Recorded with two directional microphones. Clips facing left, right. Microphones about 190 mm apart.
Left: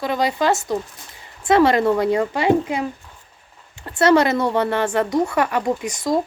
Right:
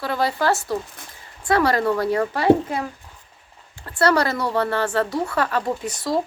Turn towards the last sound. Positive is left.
turn(degrees=15)  # may be behind; listen again after turning